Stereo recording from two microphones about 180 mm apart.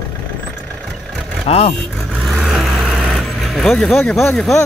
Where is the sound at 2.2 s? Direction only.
Centre (ahead or behind).